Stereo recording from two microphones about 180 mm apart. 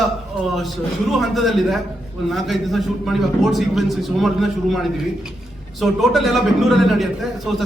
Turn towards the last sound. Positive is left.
turn(degrees=0)  # may be behind; listen again after turning